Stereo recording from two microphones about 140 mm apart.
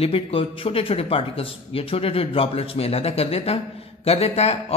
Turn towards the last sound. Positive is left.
turn(degrees=50)  # may be behind; listen again after turning